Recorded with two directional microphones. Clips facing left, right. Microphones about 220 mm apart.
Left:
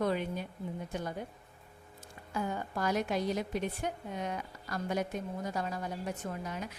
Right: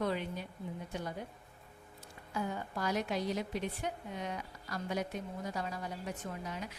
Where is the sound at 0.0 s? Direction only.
50° left (ahead or behind).